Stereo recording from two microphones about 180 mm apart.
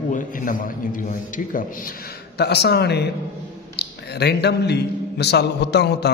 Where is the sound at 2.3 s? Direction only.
65° left (ahead or behind).